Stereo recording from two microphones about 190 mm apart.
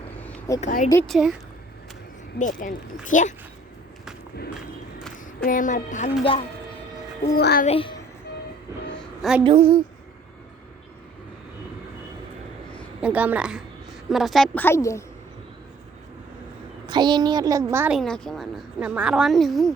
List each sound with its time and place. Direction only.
0.2 s a sound: 10° left (ahead or behind)
0.6 s speech: 45° left (ahead or behind)
1.0 s a woman's voice: centre (ahead or behind)
2.4 s speech: 45° left (ahead or behind)
5.1 s speech: 45° left (ahead or behind)
7.3 s speech: 55° left (ahead or behind)
7.7 s speech: 30° left (ahead or behind)
9.0 s a sound: centre (ahead or behind)
9.4 s a child's voice: 30° right (ahead or behind)
13.0 s a woman's voice: 5° right (ahead or behind); by 15.0 s 15° left (ahead or behind)
16.8 s a child's voice: 20° right (ahead or behind)
18.0 s a woman's voice: 5° left (ahead or behind)